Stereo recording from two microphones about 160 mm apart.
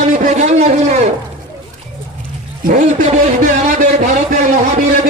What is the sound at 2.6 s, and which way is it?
A man's voice, 50° right (ahead or behind).